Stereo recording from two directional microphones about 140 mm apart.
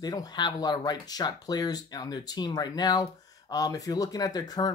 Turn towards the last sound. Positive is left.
turn(degrees=30)  # may be behind; listen again after turning